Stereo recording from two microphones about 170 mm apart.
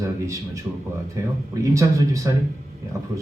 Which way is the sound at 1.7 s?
20° right (ahead or behind).